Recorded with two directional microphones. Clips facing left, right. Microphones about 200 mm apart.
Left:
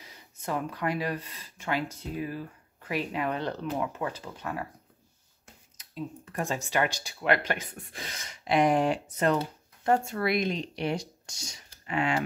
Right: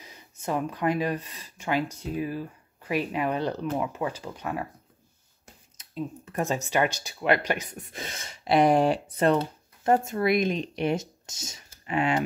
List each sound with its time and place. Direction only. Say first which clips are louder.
0.0 s speech: right 4 dB; 20° right (ahead or behind)
5.8 s speech: right 4 dB; 20° right (ahead or behind)
10.0 s speech: right 4 dB; 20° right (ahead or behind)